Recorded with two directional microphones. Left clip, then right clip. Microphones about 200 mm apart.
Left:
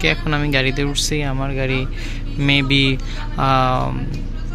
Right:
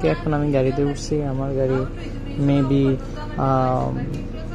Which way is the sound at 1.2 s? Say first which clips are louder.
Even; 45° left (ahead or behind).